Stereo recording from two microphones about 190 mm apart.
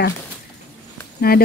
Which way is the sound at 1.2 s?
55° left (ahead or behind).